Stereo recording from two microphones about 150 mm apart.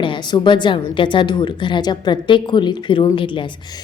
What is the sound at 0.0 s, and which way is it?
A woman's voice, 30° left (ahead or behind).